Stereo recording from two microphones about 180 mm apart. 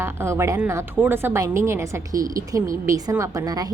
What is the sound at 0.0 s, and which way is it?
A woman's voice, 15° right (ahead or behind).